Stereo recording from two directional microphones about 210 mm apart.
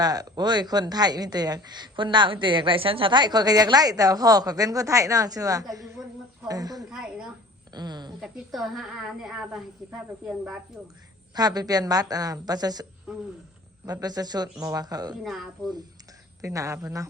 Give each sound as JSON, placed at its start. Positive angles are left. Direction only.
{"t": 0.0, "sound": "speech", "side_deg": -20}
{"t": 6.9, "sound": "a woman's voice", "side_deg": -5}
{"t": 7.7, "sound": "a sound", "side_deg": -20}
{"t": 8.2, "sound": "a woman's voice", "side_deg": 0}
{"t": 11.3, "sound": "speech", "side_deg": -20}
{"t": 15.2, "sound": "a woman's voice", "side_deg": 0}
{"t": 16.4, "sound": "speech", "side_deg": -15}